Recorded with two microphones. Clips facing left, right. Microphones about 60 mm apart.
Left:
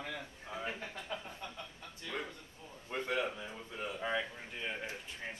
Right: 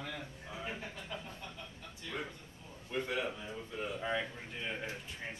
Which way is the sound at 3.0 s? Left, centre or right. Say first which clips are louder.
Left 2 dB; centre.